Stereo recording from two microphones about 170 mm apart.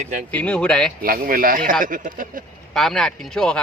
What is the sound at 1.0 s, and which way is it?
Speech, 55° right (ahead or behind).